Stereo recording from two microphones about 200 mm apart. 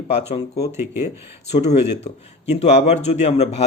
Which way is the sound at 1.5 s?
35° left (ahead or behind).